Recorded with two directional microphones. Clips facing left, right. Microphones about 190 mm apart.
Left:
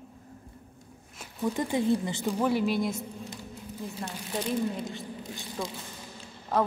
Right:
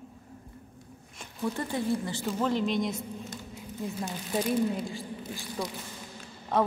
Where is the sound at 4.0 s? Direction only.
5° right (ahead or behind).